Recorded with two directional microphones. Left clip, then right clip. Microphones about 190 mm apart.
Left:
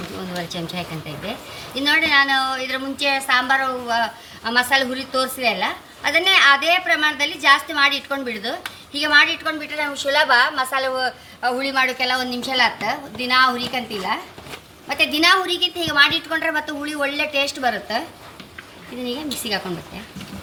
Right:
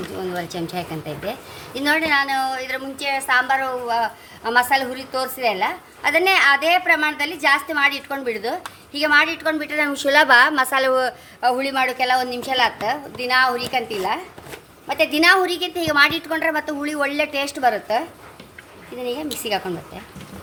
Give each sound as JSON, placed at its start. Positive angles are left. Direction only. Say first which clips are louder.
{"t": 0.4, "sound": "a woman's voice", "louder": "right 1 dB", "side_deg": -45}
{"t": 19.0, "sound": "a woman's voice", "louder": "right 1 dB", "side_deg": -45}